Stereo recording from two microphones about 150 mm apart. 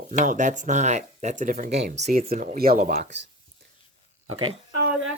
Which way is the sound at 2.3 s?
70° right (ahead or behind).